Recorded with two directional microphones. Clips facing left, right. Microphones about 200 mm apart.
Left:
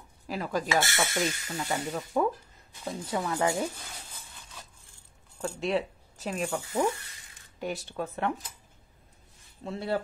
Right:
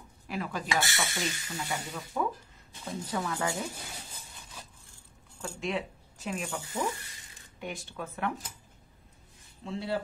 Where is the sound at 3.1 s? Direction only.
25° left (ahead or behind).